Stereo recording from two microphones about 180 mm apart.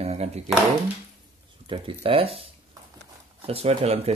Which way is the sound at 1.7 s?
30° right (ahead or behind).